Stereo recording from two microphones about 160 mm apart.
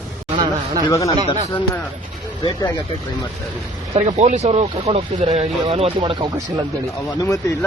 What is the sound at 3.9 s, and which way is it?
Speech, 45° right (ahead or behind).